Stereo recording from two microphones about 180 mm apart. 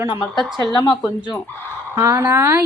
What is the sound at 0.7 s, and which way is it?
Speech, 20° left (ahead or behind).